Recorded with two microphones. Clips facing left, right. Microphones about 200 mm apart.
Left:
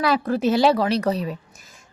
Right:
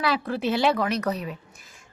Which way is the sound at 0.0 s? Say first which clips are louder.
Left 5 dB; 45° left (ahead or behind).